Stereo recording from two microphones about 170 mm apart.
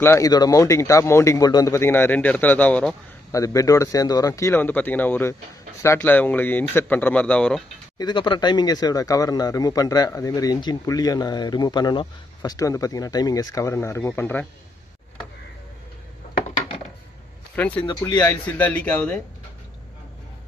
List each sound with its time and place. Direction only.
0.0 s speech: 15° left (ahead or behind)
3.3 s speech: 20° left (ahead or behind)
8.0 s speech: 25° left (ahead or behind); by 14.5 s 10° left (ahead or behind)
17.6 s speech: 10° left (ahead or behind)
18.0 s speech: 20° left (ahead or behind)